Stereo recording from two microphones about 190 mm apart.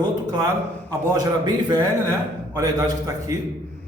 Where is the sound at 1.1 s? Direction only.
20° right (ahead or behind).